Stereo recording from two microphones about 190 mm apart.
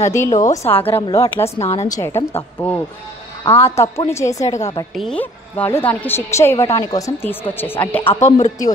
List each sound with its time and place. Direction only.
0.0 s a woman's voice: 15° left (ahead or behind)
1.6 s a woman's voice: 35° left (ahead or behind)
1.9 s a woman's voice: 15° left (ahead or behind)
4.9 s a woman's voice: 5° left (ahead or behind)